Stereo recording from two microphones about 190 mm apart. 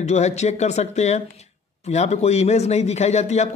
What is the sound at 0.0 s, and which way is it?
A man's voice, 35° left (ahead or behind).